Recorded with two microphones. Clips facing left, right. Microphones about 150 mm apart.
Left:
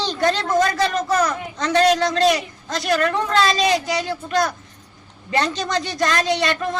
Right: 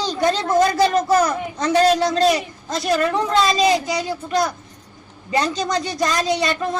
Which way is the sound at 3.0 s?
15° right (ahead or behind).